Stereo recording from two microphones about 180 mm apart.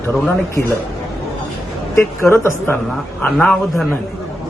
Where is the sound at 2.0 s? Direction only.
15° left (ahead or behind).